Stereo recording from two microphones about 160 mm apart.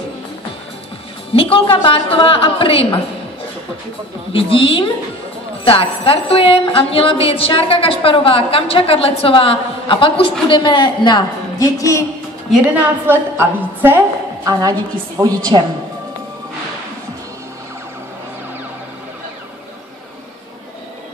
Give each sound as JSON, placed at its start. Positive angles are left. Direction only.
{"t": 1.3, "sound": "a woman's voice", "side_deg": 35}
{"t": 4.3, "sound": "a woman's voice", "side_deg": 35}
{"t": 12.4, "sound": "a woman's voice", "side_deg": -5}